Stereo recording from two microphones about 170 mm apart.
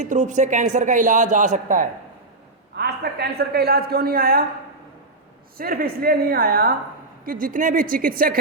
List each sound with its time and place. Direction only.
0.0 s speech: 45° right (ahead or behind)
2.7 s a man's voice: 70° right (ahead or behind)
5.5 s a woman's voice: 60° right (ahead or behind)
7.3 s a woman's voice: 55° right (ahead or behind)